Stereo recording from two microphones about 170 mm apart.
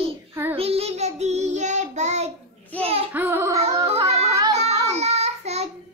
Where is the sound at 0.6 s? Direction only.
35° right (ahead or behind).